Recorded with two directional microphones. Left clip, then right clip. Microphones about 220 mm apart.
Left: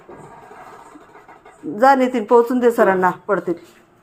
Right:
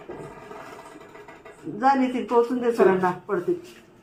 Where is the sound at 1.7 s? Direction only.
60° left (ahead or behind).